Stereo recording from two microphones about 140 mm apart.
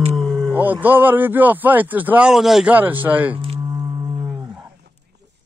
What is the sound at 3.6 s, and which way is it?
Music, 25° right (ahead or behind).